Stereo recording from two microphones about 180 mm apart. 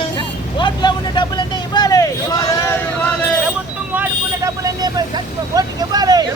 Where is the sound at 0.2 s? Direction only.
25° left (ahead or behind).